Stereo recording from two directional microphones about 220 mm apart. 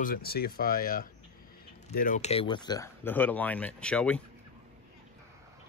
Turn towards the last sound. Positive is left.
turn(degrees=5)  # may be behind; listen again after turning